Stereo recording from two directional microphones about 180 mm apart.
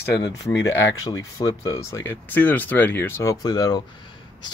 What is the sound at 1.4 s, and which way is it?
Speech, 15° left (ahead or behind).